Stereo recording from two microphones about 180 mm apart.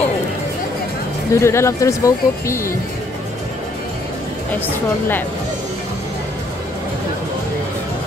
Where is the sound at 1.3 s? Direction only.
15° left (ahead or behind).